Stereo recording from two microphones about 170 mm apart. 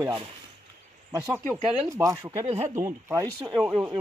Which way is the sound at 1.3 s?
15° right (ahead or behind).